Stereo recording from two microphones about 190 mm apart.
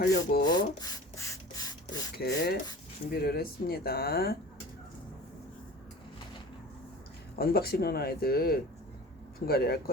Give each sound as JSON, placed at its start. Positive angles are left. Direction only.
{"t": 0.1, "sound": "speech", "side_deg": 50}
{"t": 0.4, "sound": "a sound", "side_deg": 20}
{"t": 2.1, "sound": "speech", "side_deg": 60}
{"t": 7.3, "sound": "speech", "side_deg": 55}